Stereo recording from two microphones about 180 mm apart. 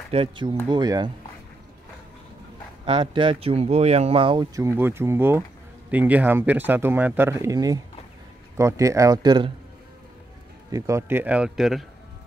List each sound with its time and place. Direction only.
0.1 s speech: 30° right (ahead or behind)
2.8 s speech: 30° right (ahead or behind)
4.6 s speech: 15° right (ahead or behind)
10.7 s speech: 15° right (ahead or behind)